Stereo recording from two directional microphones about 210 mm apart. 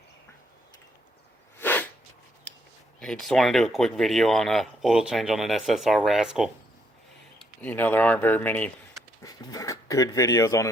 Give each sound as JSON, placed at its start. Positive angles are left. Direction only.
{"t": 1.5, "sound": "sneeze", "side_deg": 10}
{"t": 3.0, "sound": "speech", "side_deg": 0}
{"t": 9.2, "sound": "speech", "side_deg": 15}